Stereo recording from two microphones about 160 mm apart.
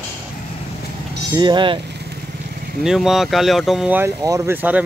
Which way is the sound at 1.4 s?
30° right (ahead or behind).